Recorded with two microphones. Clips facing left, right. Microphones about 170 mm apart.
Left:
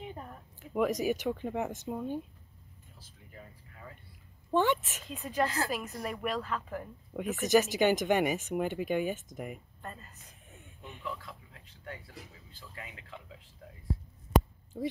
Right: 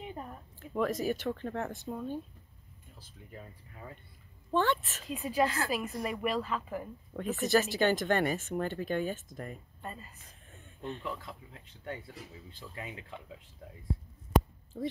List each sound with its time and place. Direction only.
0.6 s speech: 15° left (ahead or behind)
4.5 s speech: 15° left (ahead or behind)
5.0 s a woman's voice: 10° right (ahead or behind)
7.1 s speech: 10° left (ahead or behind)
9.8 s speech: 10° right (ahead or behind)
10.5 s a sound: 15° left (ahead or behind)
12.5 s speech: 25° right (ahead or behind)
14.7 s a woman's voice: 5° left (ahead or behind)